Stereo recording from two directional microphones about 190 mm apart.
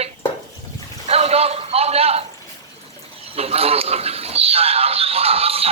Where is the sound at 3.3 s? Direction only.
30° right (ahead or behind).